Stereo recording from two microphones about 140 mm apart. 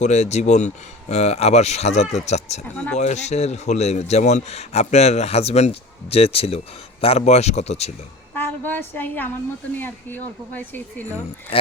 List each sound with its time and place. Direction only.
0.0 s a man's voice: 55° left (ahead or behind)
2.7 s speech: 10° left (ahead or behind)
3.0 s a man's voice: 55° left (ahead or behind)
8.4 s speech: 15° left (ahead or behind)